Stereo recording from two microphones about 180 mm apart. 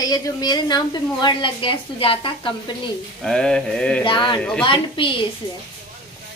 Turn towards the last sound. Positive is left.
turn(degrees=30)  # may be behind; listen again after turning